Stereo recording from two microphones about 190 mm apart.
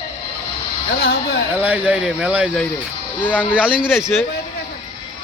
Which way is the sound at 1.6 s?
10° right (ahead or behind).